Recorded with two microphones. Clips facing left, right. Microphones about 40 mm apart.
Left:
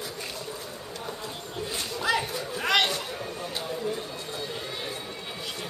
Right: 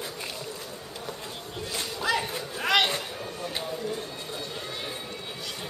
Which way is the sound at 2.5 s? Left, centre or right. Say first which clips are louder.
Even; centre.